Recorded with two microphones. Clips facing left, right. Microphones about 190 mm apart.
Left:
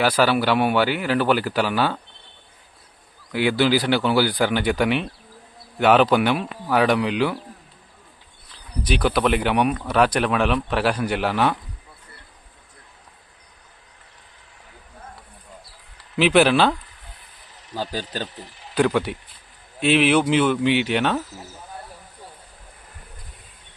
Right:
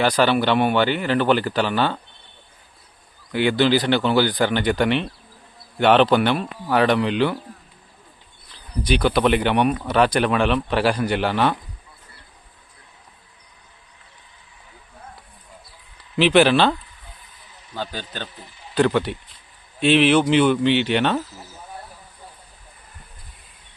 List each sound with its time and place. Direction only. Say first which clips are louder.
0.0 s speech: right 1 dB; 5° left (ahead or behind)
3.3 s speech: right 1 dB; 5° left (ahead or behind)
8.9 s speech: right 2 dB; 5° left (ahead or behind)
16.1 s speech: right 1 dB; 5° left (ahead or behind)
17.9 s speech: left 4 dB; 35° left (ahead or behind)
18.7 s speech: right 1 dB; 5° left (ahead or behind)